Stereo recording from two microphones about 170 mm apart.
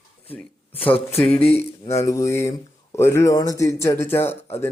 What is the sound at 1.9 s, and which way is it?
Speech, 15° left (ahead or behind).